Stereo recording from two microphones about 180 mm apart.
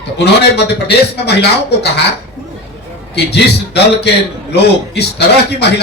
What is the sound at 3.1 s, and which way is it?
Speech, 65° left (ahead or behind).